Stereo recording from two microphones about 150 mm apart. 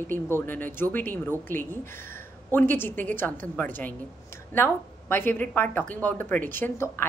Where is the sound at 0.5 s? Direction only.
15° left (ahead or behind).